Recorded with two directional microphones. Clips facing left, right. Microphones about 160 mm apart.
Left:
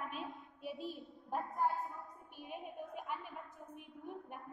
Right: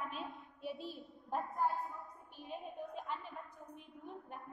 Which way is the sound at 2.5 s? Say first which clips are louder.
Right 1 dB; 15° left (ahead or behind).